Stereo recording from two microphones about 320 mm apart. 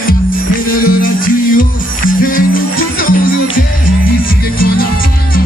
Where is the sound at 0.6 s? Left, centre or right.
Left.